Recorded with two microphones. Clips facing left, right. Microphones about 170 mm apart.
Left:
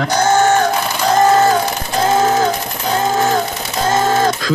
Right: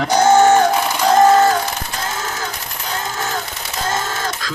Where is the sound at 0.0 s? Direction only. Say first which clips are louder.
Right 2 dB; 10° right (ahead or behind).